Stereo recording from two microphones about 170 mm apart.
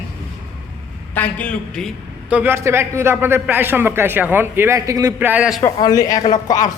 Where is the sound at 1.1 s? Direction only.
10° left (ahead or behind).